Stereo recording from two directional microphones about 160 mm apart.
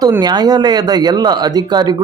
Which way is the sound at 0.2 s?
25° right (ahead or behind).